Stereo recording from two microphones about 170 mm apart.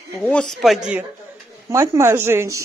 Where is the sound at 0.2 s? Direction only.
5° left (ahead or behind).